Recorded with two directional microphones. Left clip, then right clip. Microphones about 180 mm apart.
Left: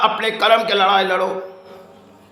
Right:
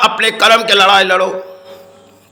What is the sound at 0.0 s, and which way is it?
A man's voice, 15° right (ahead or behind).